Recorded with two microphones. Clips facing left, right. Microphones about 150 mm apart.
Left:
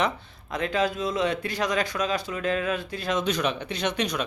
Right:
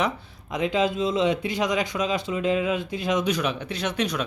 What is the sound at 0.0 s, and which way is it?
A man's voice, 15° right (ahead or behind).